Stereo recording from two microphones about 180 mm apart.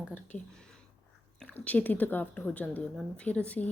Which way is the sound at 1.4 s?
10° left (ahead or behind).